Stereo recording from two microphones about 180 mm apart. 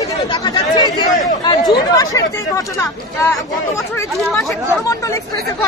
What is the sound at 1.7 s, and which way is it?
Speech, 20° left (ahead or behind).